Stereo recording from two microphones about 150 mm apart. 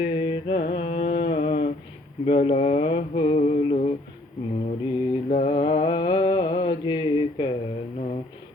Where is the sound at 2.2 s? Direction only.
45° left (ahead or behind).